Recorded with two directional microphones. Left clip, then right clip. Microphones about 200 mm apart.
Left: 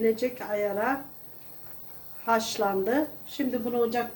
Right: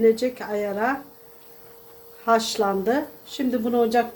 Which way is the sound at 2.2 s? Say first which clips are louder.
Right 5 dB; 50° right (ahead or behind).